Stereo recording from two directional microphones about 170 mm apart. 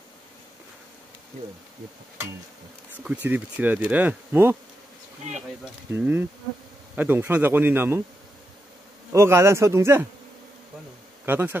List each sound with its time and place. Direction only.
3.3 s speech: 10° right (ahead or behind)
5.9 s speech: 15° right (ahead or behind)
9.1 s speech: 15° right (ahead or behind)
11.2 s speech: 10° right (ahead or behind)